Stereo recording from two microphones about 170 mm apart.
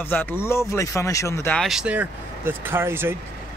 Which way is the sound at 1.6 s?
Centre (ahead or behind).